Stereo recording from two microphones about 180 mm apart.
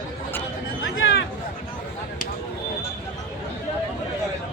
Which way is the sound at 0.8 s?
90° left.